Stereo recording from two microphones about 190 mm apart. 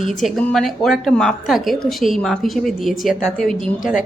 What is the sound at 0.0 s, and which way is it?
A woman's voice, centre (ahead or behind).